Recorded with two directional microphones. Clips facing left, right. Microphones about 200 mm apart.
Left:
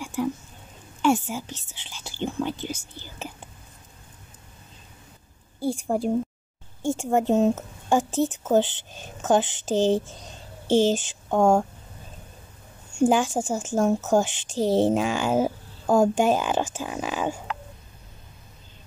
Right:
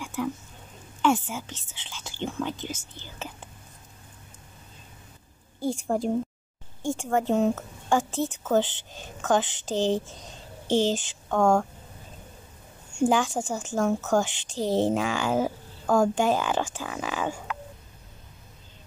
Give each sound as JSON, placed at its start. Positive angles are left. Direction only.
{"t": 1.0, "sound": "speech", "side_deg": 15}
{"t": 5.6, "sound": "a woman's voice", "side_deg": 10}
{"t": 13.0, "sound": "a woman's voice", "side_deg": 20}